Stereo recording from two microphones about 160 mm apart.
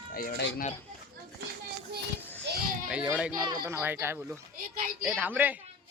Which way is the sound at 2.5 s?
90° right.